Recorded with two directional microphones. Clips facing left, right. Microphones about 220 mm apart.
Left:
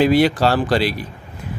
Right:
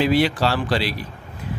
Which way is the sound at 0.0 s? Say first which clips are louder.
Left 4 dB; 45° left (ahead or behind).